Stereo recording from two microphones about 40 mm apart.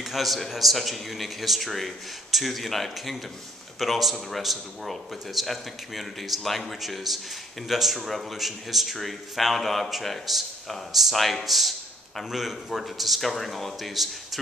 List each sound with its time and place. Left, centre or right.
0.0 s speech: centre